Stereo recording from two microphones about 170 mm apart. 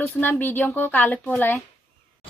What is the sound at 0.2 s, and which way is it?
A woman's voice, 10° left (ahead or behind).